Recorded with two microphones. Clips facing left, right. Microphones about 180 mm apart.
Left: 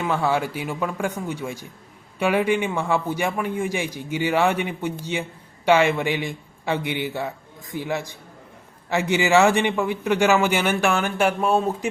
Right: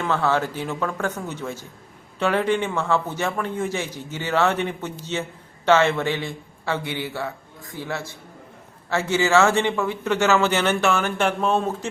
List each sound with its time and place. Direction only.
0.0 s a man's voice: 10° left (ahead or behind)